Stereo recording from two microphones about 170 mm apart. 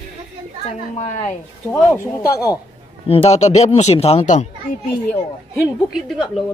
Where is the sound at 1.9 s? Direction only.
20° left (ahead or behind).